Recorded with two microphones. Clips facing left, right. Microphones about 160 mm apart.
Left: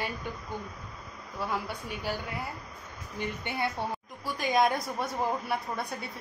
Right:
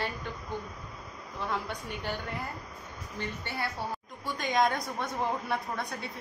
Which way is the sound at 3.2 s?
15° left (ahead or behind).